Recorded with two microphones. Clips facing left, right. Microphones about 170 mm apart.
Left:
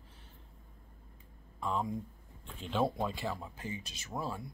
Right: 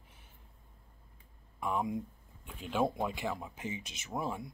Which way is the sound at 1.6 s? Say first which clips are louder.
Right 1 dB; 15° right (ahead or behind).